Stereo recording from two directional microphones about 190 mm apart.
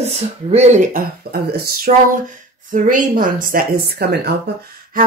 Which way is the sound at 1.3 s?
55° right (ahead or behind).